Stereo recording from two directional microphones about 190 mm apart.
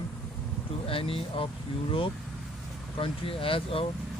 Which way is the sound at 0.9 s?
30° left (ahead or behind).